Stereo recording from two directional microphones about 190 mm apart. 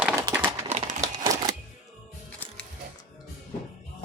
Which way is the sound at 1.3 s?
20° right (ahead or behind).